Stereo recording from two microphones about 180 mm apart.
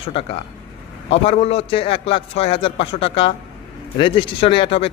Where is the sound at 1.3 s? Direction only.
35° left (ahead or behind).